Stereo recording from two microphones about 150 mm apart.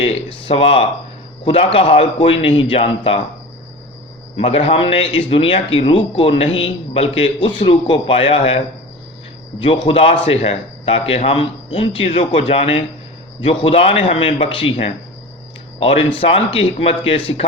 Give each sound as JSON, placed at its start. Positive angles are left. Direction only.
{"t": 0.0, "sound": "speech", "side_deg": 35}
{"t": 4.4, "sound": "speech", "side_deg": 40}